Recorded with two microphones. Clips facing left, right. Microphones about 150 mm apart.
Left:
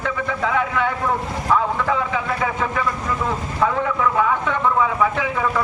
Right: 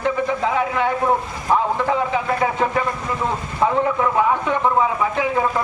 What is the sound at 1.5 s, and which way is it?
Speech, 25° right (ahead or behind).